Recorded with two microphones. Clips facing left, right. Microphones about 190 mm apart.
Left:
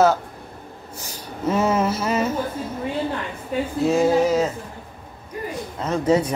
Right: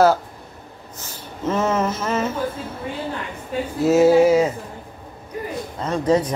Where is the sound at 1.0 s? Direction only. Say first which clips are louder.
Left 1 dB; 10° left (ahead or behind).